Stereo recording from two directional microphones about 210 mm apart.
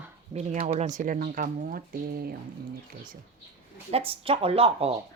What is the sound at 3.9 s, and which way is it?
Speech, 25° right (ahead or behind).